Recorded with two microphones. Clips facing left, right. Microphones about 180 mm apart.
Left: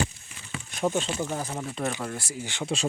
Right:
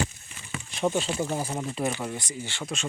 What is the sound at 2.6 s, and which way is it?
Speech, 35° left (ahead or behind).